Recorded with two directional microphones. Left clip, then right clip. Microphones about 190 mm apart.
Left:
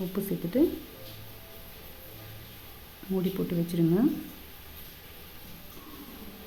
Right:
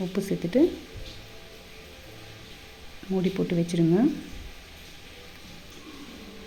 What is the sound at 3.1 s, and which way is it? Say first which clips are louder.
Speech: right 4 dB; centre (ahead or behind).